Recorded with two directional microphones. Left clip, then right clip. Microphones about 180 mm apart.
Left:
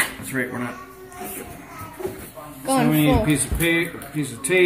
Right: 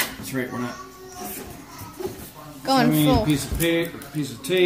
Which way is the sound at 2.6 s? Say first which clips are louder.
Even; 10° right (ahead or behind).